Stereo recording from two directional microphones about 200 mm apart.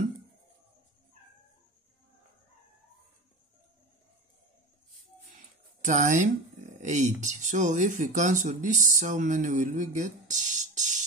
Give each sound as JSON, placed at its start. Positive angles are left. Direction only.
{"t": 5.8, "sound": "speech", "side_deg": -35}